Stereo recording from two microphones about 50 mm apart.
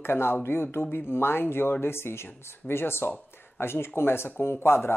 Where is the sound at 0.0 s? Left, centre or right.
Left.